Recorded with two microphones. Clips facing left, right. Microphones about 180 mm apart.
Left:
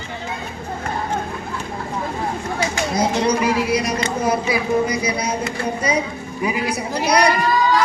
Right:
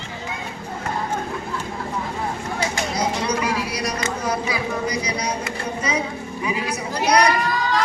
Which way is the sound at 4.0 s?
25° left (ahead or behind).